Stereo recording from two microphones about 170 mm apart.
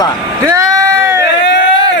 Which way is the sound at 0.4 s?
20° right (ahead or behind).